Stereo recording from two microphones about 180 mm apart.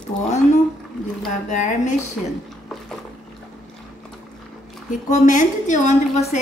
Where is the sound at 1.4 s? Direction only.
45° left (ahead or behind).